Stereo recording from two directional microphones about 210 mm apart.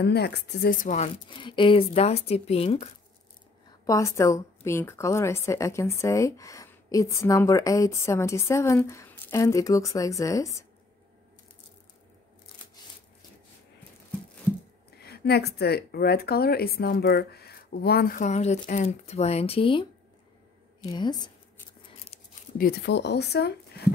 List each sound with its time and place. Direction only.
0.0 s speech: 50° left (ahead or behind)
0.8 s a woman's voice: 30° left (ahead or behind)
3.8 s speech: 15° left (ahead or behind)
15.0 s speech: 50° left (ahead or behind); by 19.9 s 25° left (ahead or behind)
20.9 s a woman's voice: 20° left (ahead or behind)
22.6 s speech: 50° left (ahead or behind)